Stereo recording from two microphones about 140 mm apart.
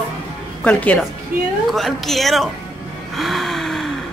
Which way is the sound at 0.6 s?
10° left (ahead or behind).